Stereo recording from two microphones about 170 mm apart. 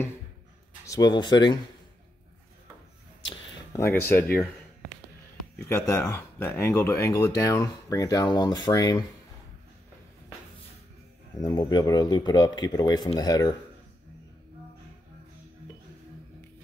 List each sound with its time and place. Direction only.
0.8 s speech: 20° left (ahead or behind)
3.7 s speech: 15° left (ahead or behind)
5.7 s speech: 15° left (ahead or behind)
11.3 s speech: 20° left (ahead or behind)